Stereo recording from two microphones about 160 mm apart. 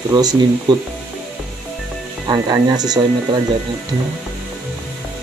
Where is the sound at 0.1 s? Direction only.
25° right (ahead or behind).